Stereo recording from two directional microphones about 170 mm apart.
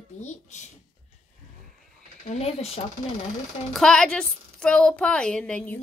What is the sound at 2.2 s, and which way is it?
Speech, 40° left (ahead or behind).